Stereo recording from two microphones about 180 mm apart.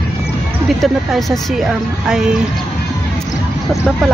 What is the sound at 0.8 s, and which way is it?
Speech, centre (ahead or behind).